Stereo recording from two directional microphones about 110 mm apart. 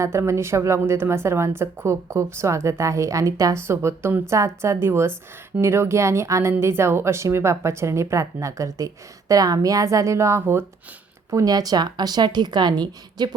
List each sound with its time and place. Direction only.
0.0 s a woman's voice: 25° right (ahead or behind)
11.3 s a woman's voice: 30° right (ahead or behind)